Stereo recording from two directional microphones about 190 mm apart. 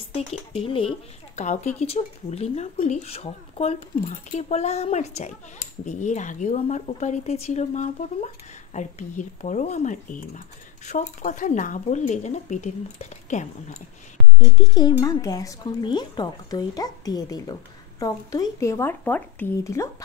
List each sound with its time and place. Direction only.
0.1 s speech: 30° left (ahead or behind)
14.5 s speech: 20° left (ahead or behind)